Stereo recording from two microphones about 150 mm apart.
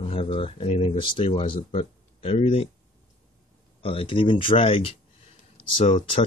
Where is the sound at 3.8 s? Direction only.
35° left (ahead or behind).